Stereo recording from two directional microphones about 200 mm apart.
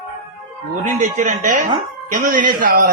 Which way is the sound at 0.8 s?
40° right (ahead or behind).